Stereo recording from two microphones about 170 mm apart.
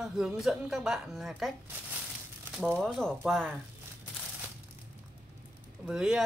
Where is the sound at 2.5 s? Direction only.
Centre (ahead or behind).